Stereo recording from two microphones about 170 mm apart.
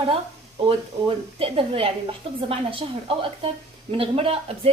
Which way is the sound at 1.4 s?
35° right (ahead or behind).